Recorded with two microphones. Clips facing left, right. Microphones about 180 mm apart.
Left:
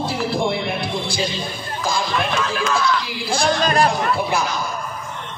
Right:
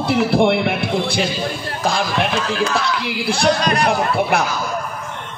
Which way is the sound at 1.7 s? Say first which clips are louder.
Right 2 dB; 65° right (ahead or behind).